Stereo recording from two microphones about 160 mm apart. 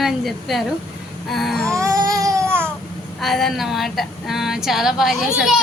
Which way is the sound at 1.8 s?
20° right (ahead or behind).